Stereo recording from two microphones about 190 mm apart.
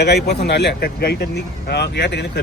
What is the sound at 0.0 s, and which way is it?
Speech, 60° left (ahead or behind).